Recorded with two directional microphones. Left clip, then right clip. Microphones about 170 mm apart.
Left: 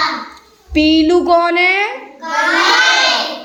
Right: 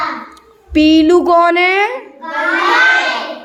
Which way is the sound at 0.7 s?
30° right (ahead or behind).